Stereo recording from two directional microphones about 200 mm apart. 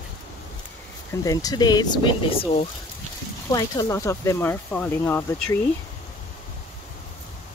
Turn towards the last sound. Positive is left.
turn(degrees=10)  # may be behind; listen again after turning